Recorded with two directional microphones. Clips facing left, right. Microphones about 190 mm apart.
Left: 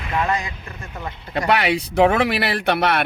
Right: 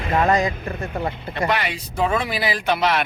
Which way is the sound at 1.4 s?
70° left (ahead or behind).